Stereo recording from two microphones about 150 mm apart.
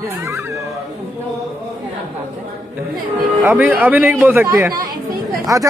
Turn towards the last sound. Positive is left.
turn(degrees=-25)  # may be behind; listen again after turning